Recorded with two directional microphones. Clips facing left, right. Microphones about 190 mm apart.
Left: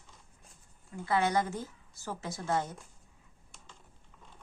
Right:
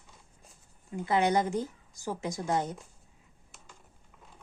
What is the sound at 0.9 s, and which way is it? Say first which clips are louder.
A woman's voice: right 3 dB; 20° right (ahead or behind).